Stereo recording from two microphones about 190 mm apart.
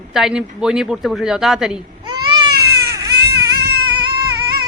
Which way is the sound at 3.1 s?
60° right (ahead or behind).